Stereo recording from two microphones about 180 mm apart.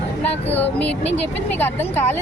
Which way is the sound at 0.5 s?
10° left (ahead or behind).